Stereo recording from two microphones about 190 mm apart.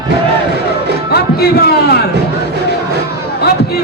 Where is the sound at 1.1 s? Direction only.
55° left (ahead or behind).